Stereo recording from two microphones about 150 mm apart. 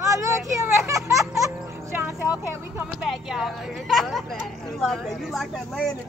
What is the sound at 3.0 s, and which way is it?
A woman's voice, 5° right (ahead or behind).